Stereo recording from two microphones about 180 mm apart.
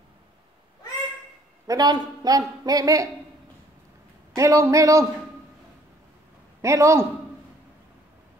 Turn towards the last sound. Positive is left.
turn(degrees=-15)  # may be behind; listen again after turning